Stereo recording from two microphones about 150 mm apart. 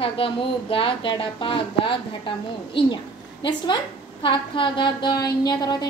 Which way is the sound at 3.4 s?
35° left (ahead or behind).